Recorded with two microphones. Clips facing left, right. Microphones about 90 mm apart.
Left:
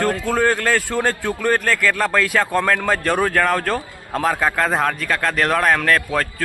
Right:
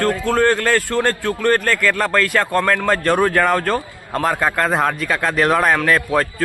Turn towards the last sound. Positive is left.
turn(degrees=-5)  # may be behind; listen again after turning